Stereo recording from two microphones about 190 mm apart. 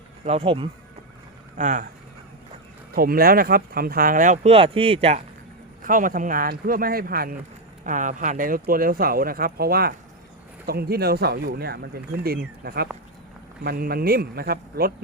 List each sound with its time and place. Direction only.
0.3 s speech: 30° right (ahead or behind)
1.5 s speech: 45° right (ahead or behind)
2.9 s speech: 50° right (ahead or behind); by 5.2 s 35° right (ahead or behind)
5.8 s speech: 45° right (ahead or behind)